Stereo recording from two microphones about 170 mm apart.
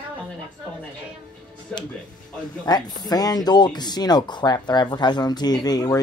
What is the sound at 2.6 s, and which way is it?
Speech, 25° left (ahead or behind).